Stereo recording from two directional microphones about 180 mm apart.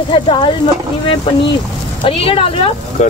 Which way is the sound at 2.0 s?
30° left (ahead or behind).